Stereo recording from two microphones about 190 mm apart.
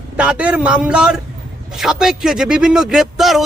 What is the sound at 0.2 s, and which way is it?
Speech, 5° right (ahead or behind).